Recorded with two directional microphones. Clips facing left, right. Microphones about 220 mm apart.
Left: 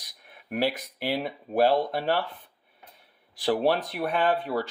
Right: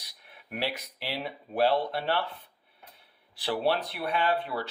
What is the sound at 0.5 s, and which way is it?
Speech, 50° left (ahead or behind).